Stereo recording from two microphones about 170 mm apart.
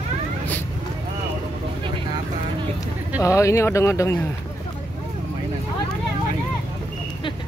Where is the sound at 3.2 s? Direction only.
15° left (ahead or behind).